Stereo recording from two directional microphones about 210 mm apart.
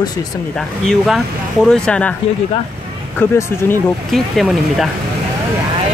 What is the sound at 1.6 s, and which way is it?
Speech, 5° left (ahead or behind).